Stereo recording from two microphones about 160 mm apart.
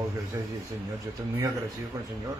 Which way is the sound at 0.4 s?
30° right (ahead or behind).